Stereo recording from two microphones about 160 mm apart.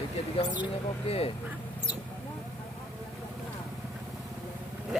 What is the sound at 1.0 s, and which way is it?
Speech, 40° left (ahead or behind).